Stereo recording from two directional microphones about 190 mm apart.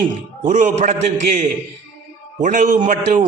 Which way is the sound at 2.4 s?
45° right (ahead or behind).